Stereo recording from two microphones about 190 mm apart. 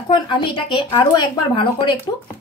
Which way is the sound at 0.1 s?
25° left (ahead or behind).